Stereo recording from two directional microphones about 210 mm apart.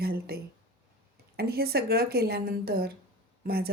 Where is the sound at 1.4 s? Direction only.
50° right (ahead or behind).